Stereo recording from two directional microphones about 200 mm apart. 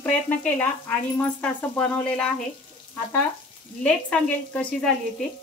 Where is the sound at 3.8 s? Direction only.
5° left (ahead or behind).